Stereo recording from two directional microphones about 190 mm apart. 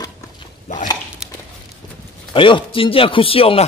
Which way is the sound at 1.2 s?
5° right (ahead or behind).